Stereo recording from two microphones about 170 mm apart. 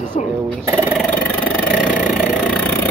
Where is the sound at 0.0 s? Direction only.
45° left (ahead or behind).